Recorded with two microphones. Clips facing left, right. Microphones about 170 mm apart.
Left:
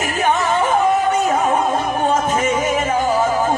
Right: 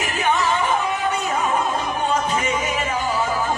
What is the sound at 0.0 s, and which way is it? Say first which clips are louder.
Music: left 3 dB; 40° left (ahead or behind).